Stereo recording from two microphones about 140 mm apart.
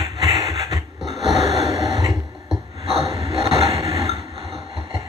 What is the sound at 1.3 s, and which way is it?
Gasp, 50° left (ahead or behind).